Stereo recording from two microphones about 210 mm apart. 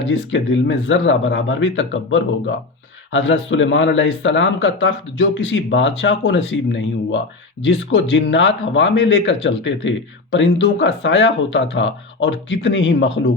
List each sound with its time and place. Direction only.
0.1 s a man's voice: 60° left (ahead or behind)